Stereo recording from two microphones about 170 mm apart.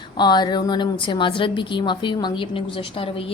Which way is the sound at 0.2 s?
25° left (ahead or behind).